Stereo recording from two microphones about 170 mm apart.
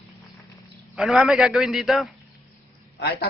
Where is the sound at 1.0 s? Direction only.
Centre (ahead or behind).